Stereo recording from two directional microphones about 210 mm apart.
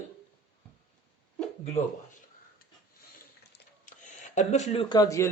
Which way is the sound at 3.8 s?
35° left (ahead or behind).